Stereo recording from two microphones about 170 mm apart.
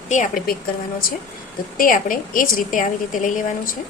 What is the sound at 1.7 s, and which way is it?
A woman's voice, 55° left (ahead or behind).